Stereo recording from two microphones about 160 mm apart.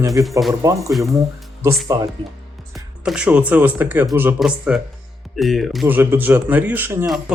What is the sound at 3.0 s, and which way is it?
Speech, 5° right (ahead or behind).